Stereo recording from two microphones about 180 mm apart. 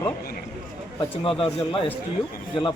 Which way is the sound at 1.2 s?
30° left (ahead or behind).